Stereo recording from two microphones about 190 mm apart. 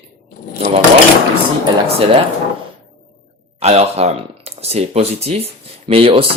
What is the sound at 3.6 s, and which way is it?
Speech, 35° right (ahead or behind).